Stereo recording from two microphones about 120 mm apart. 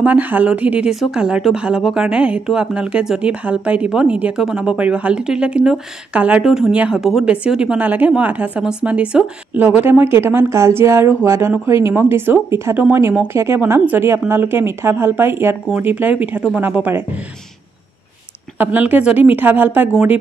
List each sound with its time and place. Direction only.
0.0 s speech: 15° right (ahead or behind)
18.6 s speech: 15° right (ahead or behind)